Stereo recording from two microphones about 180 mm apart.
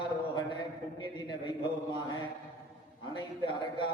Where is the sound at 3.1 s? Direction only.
25° left (ahead or behind).